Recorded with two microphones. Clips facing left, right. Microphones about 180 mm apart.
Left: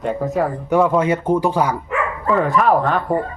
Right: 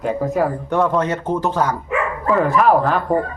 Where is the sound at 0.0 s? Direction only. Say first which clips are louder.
Right 1 dB; centre (ahead or behind).